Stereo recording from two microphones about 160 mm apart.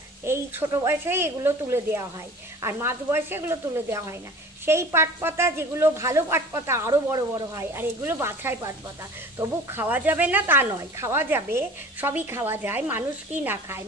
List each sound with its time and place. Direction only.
0.2 s speech: 15° right (ahead or behind)